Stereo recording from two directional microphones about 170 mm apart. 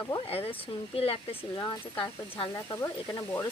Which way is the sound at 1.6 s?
25° left (ahead or behind).